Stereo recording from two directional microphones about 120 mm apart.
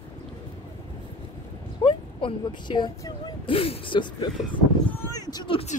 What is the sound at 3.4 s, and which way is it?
Speech, 50° left (ahead or behind).